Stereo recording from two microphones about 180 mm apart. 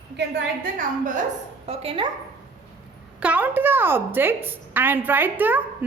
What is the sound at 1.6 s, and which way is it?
Speech, 35° right (ahead or behind).